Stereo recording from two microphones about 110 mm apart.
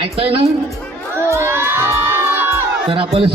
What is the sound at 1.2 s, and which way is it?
Children shouting, 25° right (ahead or behind).